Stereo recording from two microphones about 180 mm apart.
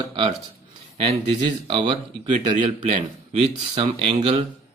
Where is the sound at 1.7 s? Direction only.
30° right (ahead or behind).